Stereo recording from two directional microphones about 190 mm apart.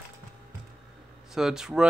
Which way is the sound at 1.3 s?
Centre (ahead or behind).